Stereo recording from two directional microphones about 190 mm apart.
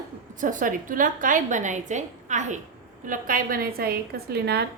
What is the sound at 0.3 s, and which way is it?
A woman's voice, 45° right (ahead or behind).